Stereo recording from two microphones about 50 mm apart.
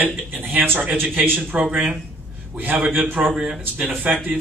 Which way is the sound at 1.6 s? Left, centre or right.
Centre.